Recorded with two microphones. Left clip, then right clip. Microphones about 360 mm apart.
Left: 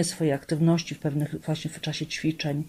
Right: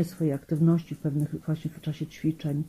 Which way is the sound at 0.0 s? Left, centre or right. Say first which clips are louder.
Left 4 dB; left.